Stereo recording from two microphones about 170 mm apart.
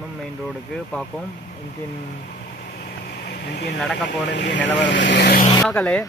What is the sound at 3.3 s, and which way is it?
Vehicle, 80° left.